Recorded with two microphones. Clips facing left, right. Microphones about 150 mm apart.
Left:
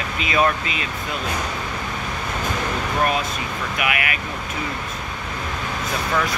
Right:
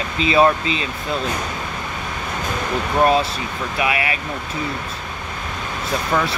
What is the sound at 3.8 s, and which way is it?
Speech, 30° right (ahead or behind).